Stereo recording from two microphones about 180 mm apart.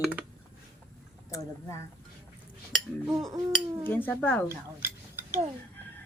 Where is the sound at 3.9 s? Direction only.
10° left (ahead or behind).